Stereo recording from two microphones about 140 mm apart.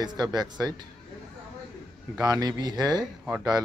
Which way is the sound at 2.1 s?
25° right (ahead or behind).